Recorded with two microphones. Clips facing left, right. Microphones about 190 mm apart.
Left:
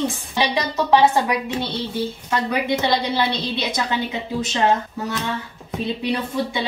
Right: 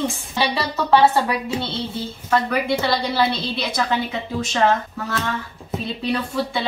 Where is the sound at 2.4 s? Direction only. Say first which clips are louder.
Even; 20° left (ahead or behind).